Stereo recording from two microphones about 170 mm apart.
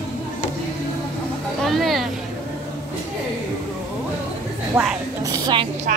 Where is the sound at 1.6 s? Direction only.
Centre (ahead or behind).